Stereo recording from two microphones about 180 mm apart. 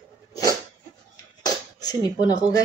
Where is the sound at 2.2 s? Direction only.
20° left (ahead or behind).